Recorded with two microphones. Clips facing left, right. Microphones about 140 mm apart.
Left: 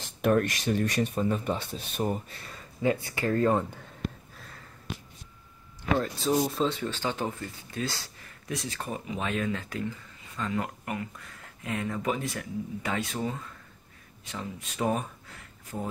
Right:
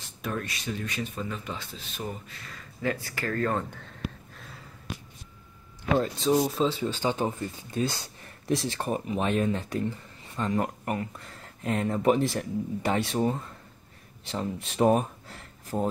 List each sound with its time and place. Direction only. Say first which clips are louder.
0.2 s speech: left 9 dB; 60° left (ahead or behind)
1.1 s speech: left 7 dB; 40° left (ahead or behind)
2.8 s speech: left 3 dB; 20° left (ahead or behind)
4.0 s sniff: left 1 dB; 5° right (ahead or behind)
6.3 s speech: right 2 dB; centre (ahead or behind)
6.8 s speech: right 3 dB; 15° right (ahead or behind); by 8.8 s 30° right (ahead or behind)
8.8 s speech: right 6 dB; 50° right (ahead or behind)
9.2 s speech: right 3 dB; 25° right (ahead or behind)
15.7 s speech: right 7 dB; 45° right (ahead or behind)